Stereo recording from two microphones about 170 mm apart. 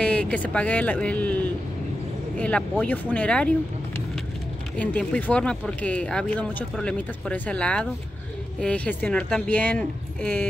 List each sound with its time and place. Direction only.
0.0 s speech: 5° left (ahead or behind)